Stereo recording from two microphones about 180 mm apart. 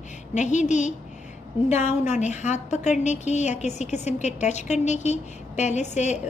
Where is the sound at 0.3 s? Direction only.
40° left (ahead or behind).